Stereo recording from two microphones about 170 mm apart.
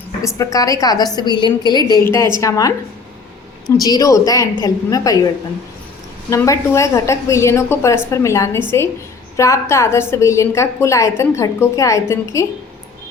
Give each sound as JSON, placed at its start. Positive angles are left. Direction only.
{"t": 0.3, "sound": "a woman's voice", "side_deg": 20}
{"t": 3.8, "sound": "a woman's voice", "side_deg": 20}
{"t": 6.3, "sound": "a woman's voice", "side_deg": 20}